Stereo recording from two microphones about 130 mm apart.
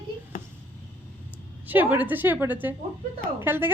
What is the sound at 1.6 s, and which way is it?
A woman's voice, 15° right (ahead or behind).